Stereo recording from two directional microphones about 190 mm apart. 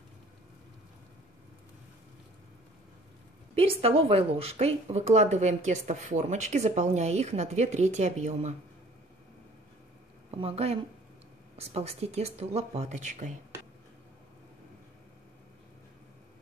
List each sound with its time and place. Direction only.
3.5 s a woman's voice: 30° right (ahead or behind)
10.3 s a woman's voice: 30° right (ahead or behind)